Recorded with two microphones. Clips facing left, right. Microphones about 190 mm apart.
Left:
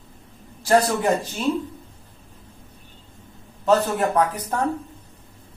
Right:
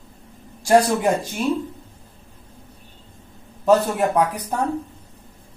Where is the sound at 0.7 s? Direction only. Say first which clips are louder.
Right 2 dB; 10° right (ahead or behind).